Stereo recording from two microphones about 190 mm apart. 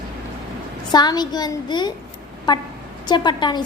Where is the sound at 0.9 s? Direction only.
20° left (ahead or behind).